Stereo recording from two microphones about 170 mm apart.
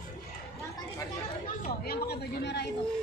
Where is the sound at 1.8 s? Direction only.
70° left (ahead or behind).